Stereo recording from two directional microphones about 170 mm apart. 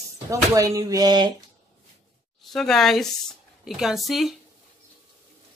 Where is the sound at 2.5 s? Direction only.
Centre (ahead or behind).